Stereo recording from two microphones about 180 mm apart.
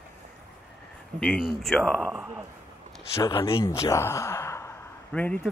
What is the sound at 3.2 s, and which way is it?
Speech, 20° left (ahead or behind).